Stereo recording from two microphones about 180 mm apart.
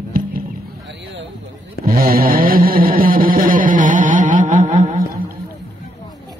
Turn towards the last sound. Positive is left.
turn(degrees=-45)  # may be behind; listen again after turning